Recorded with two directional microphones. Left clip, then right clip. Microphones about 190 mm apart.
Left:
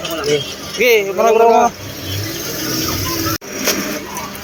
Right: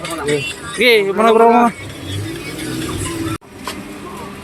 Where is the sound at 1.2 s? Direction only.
40° right (ahead or behind).